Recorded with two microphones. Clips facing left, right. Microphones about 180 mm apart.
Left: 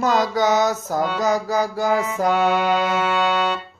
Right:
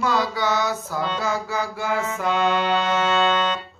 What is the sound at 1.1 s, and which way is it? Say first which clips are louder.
Music: left 7 dB; 40° left (ahead or behind).